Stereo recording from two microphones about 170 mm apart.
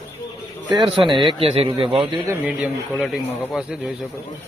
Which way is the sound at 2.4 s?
5° right (ahead or behind).